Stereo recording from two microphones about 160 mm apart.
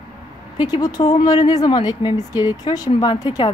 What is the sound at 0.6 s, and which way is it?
Speech, 25° left (ahead or behind).